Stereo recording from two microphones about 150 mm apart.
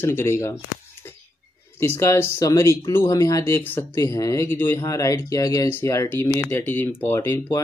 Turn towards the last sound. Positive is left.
turn(degrees=15)  # may be behind; listen again after turning